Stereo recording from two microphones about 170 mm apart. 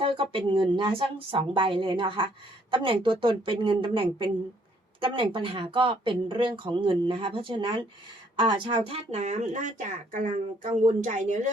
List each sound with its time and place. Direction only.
0.0 s speech: 30° right (ahead or behind); by 11.5 s 45° right (ahead or behind)